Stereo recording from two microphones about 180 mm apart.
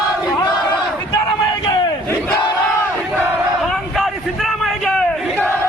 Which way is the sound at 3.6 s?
Centre (ahead or behind).